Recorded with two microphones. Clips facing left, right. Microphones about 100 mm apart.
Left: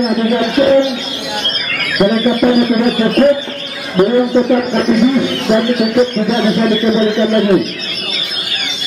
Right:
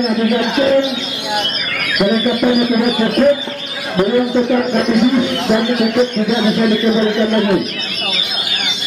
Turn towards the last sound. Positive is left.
turn(degrees=0)  # may be behind; listen again after turning